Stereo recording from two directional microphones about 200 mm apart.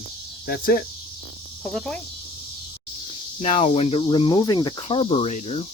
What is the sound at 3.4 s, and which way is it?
Speech, 35° left (ahead or behind).